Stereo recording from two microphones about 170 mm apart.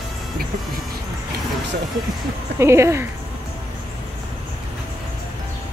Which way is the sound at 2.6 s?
15° right (ahead or behind).